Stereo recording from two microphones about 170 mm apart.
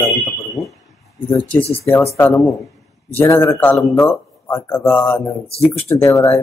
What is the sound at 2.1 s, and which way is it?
Speech, 15° left (ahead or behind).